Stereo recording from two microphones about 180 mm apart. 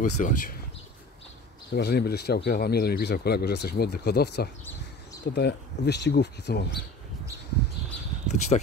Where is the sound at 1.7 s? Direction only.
60° left (ahead or behind).